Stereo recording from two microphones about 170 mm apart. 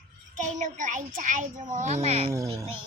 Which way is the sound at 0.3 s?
45° right (ahead or behind).